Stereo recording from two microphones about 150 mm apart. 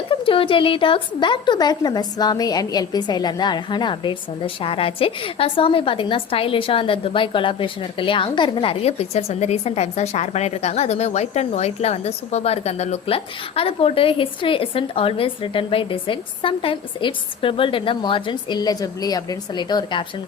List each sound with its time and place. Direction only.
0.1 s a woman's voice: 35° left (ahead or behind)